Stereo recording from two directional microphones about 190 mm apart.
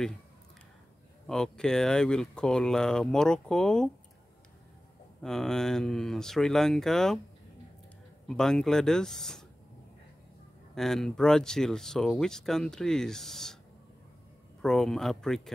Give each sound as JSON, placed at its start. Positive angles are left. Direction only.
{"t": 1.2, "sound": "speech", "side_deg": 5}
{"t": 5.2, "sound": "speech", "side_deg": 5}
{"t": 8.3, "sound": "speech", "side_deg": 5}
{"t": 10.7, "sound": "speech", "side_deg": 0}
{"t": 14.6, "sound": "speech", "side_deg": 0}